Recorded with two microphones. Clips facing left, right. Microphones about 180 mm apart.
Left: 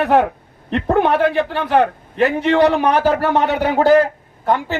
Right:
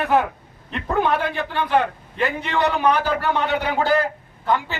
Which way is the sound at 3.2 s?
50° left (ahead or behind).